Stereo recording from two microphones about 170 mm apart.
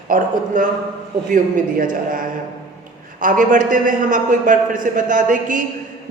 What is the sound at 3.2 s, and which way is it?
Speech, 50° right (ahead or behind).